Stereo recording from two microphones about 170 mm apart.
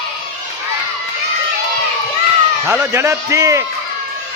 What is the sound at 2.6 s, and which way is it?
Speech, 15° right (ahead or behind).